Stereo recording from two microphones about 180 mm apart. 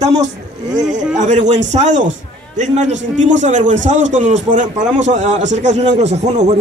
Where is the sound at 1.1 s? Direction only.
40° right (ahead or behind).